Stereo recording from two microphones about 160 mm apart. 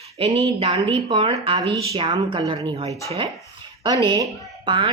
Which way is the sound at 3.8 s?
30° right (ahead or behind).